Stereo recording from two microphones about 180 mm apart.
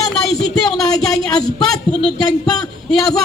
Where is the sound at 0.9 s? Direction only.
20° left (ahead or behind).